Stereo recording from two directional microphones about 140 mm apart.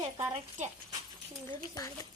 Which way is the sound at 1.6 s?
25° left (ahead or behind).